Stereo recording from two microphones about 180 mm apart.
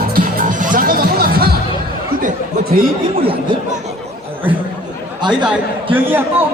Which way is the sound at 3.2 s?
30° right (ahead or behind).